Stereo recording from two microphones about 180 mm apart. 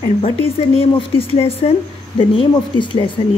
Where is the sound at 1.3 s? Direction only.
30° left (ahead or behind).